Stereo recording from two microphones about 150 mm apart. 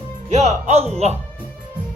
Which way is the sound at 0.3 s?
45° right (ahead or behind).